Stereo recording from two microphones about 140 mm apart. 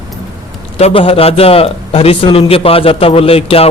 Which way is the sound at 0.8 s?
45° left (ahead or behind).